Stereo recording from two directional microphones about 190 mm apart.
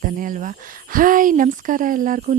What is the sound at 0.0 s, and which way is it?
A woman's voice, 45° right (ahead or behind).